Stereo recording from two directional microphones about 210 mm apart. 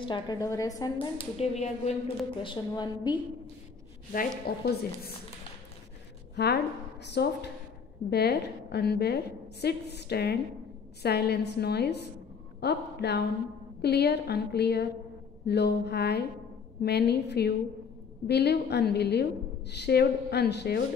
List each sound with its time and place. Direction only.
0.0 s speech: 20° left (ahead or behind)
2.4 s speech: 20° left (ahead or behind)
4.1 s a woman's voice: 45° left (ahead or behind)
6.3 s a woman's voice: 50° left (ahead or behind)